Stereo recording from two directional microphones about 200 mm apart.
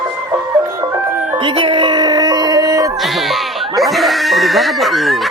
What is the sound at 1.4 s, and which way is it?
Music, 25° right (ahead or behind).